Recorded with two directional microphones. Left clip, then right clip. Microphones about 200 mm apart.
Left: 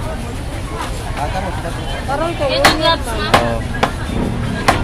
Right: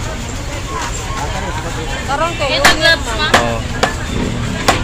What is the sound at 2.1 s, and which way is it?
Speech, 55° left (ahead or behind).